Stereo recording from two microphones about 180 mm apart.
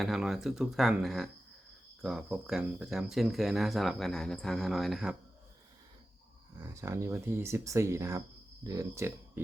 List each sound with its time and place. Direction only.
0.0 s speech: centre (ahead or behind)
6.6 s speech: 15° right (ahead or behind)